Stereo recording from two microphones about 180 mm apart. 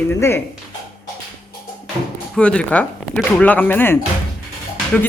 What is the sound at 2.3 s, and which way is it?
A man's voice, 5° left (ahead or behind).